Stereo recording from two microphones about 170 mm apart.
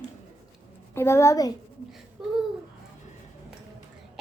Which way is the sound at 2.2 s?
5° right (ahead or behind).